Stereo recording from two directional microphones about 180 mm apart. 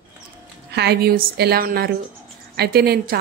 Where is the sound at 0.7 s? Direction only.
65° right (ahead or behind).